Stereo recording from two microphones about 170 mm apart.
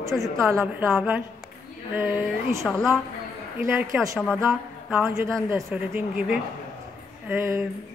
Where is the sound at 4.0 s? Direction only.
Centre (ahead or behind).